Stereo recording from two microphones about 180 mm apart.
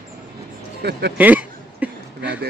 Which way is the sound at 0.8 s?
65° right (ahead or behind).